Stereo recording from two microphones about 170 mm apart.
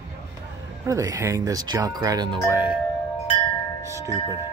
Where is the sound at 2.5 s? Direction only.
15° right (ahead or behind).